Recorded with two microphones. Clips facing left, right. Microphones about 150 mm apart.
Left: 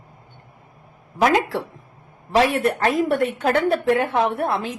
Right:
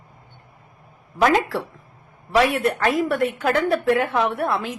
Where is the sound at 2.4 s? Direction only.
30° left (ahead or behind).